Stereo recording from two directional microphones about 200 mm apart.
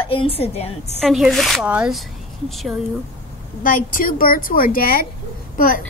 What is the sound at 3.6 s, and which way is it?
A woman's voice, 45° left (ahead or behind).